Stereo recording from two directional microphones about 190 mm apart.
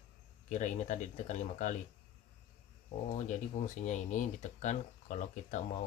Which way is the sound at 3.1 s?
40° left (ahead or behind).